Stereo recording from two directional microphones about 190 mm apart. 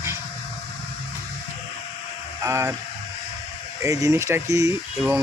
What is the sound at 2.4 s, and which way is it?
Speech, 15° right (ahead or behind).